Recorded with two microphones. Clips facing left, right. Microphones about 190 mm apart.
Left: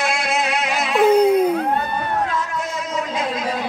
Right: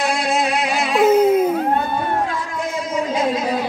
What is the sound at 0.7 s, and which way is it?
Baby cry, 10° right (ahead or behind).